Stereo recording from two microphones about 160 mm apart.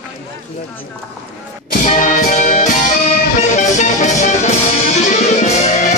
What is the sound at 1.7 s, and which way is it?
Music, 50° left (ahead or behind).